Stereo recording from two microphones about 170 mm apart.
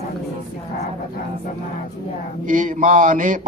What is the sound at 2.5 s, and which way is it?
Mantra, 50° right (ahead or behind).